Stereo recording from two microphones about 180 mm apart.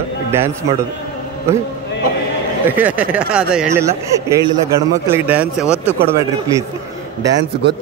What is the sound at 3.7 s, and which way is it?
A man's voice, 15° right (ahead or behind).